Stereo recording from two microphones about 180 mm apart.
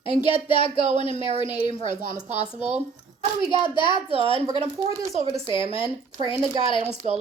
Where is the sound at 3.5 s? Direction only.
25° left (ahead or behind).